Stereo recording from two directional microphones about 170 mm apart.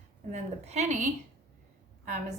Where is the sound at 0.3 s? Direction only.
40° right (ahead or behind).